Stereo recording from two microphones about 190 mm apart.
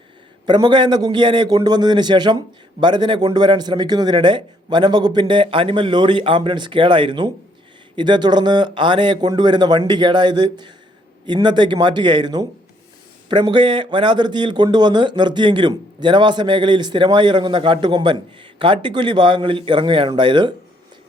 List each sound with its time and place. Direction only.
0.4 s speech: 20° right (ahead or behind)